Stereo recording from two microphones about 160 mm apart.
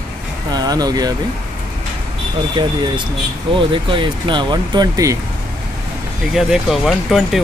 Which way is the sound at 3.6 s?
30° right (ahead or behind).